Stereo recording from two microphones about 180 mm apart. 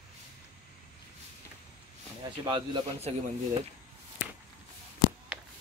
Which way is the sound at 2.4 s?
25° right (ahead or behind).